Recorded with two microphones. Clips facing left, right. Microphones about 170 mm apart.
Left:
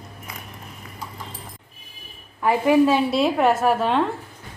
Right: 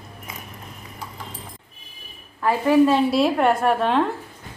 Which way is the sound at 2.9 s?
Centre (ahead or behind).